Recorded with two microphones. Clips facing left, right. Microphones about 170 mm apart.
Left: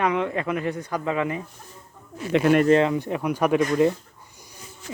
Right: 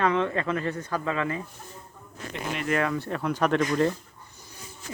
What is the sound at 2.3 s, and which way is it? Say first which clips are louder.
Speech: left 15 dB; 70° left (ahead or behind).